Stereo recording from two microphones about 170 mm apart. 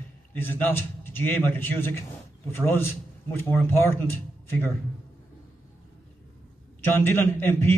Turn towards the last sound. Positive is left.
turn(degrees=15)  # may be behind; listen again after turning